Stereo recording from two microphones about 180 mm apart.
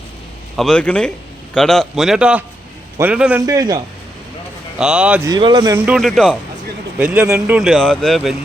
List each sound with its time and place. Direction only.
0.5 s a man's voice: centre (ahead or behind)
3.4 s speech: 20° right (ahead or behind)
4.8 s speech: 5° right (ahead or behind)
5.2 s speech: 25° right (ahead or behind)
5.7 s speech: 5° right (ahead or behind)